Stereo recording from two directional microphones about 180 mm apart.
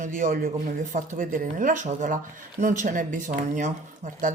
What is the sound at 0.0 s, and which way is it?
Speech, 45° right (ahead or behind).